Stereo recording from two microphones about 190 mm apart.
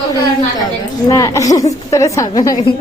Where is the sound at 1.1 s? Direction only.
15° left (ahead or behind).